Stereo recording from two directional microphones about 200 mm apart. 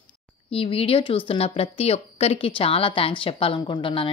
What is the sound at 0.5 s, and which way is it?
Speech, 30° left (ahead or behind).